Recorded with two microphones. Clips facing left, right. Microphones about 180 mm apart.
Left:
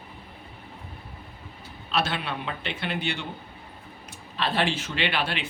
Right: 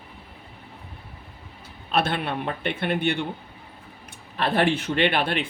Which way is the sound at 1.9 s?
55° right (ahead or behind).